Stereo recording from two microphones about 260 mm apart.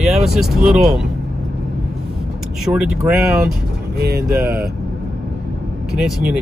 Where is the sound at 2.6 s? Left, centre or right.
Centre.